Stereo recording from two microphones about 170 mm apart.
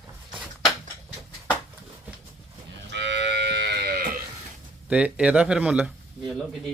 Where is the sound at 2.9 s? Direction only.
90° right; by 4.1 s 70° right (ahead or behind).